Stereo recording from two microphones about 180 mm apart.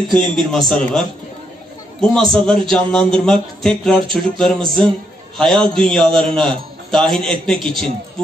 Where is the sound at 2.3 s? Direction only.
5° left (ahead or behind).